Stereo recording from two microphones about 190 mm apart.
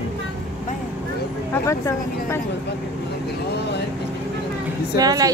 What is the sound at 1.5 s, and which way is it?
Speech, 15° left (ahead or behind).